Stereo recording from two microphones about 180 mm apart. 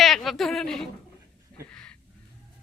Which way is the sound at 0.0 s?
Centre (ahead or behind).